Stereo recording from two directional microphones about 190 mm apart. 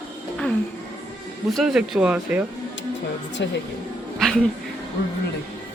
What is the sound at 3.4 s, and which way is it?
Speech, 70° left (ahead or behind).